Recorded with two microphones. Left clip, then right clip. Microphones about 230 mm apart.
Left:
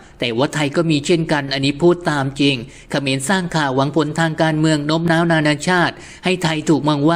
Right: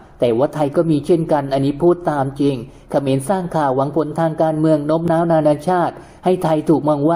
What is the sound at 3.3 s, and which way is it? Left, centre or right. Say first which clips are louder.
A man's voice: right 1 dB; left.